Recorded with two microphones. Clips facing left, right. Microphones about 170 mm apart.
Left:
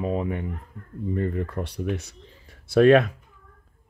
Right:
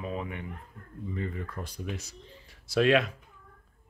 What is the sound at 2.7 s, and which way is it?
Speech, 50° left (ahead or behind).